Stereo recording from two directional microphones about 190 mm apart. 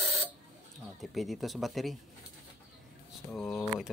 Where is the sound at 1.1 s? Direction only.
Centre (ahead or behind).